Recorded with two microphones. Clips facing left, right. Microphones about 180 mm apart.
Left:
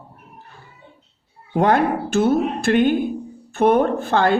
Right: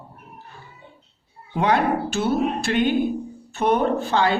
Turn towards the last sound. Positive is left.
turn(degrees=50)  # may be behind; listen again after turning